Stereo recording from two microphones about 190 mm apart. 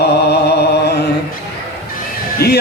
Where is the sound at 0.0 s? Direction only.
60° left (ahead or behind).